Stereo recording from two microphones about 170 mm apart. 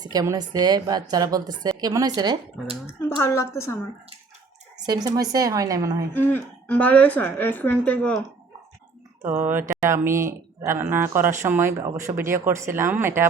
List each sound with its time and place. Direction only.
0.0 s a woman's voice: 20° right (ahead or behind)
3.2 s a woman's voice: 15° left (ahead or behind)
4.9 s a woman's voice: 25° right (ahead or behind)
6.1 s a woman's voice: 10° left (ahead or behind)
9.4 s speech: 15° right (ahead or behind)